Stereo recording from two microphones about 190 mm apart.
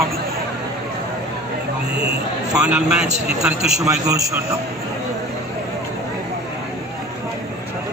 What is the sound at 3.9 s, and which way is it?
Speech, 15° right (ahead or behind).